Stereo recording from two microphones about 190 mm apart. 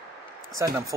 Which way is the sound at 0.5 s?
15° right (ahead or behind).